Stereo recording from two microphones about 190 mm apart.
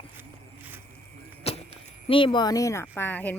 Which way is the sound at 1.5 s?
30° left (ahead or behind).